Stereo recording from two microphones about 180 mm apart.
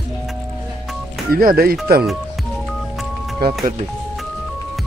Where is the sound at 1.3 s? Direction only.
55° right (ahead or behind).